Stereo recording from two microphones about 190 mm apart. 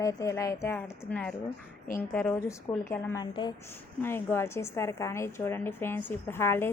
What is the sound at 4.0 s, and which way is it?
A woman's voice, 10° left (ahead or behind).